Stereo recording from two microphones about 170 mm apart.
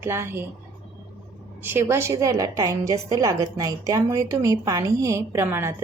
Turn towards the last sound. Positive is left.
turn(degrees=-15)  # may be behind; listen again after turning